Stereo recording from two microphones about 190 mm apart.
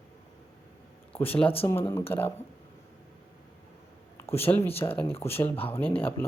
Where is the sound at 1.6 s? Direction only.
15° left (ahead or behind).